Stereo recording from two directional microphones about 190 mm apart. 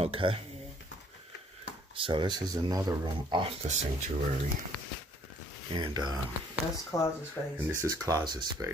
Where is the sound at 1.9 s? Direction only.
25° right (ahead or behind).